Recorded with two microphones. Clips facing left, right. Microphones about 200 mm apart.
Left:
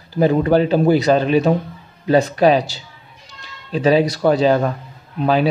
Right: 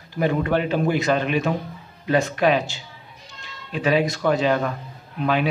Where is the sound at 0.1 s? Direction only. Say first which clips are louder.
Left 7 dB; 35° left (ahead or behind).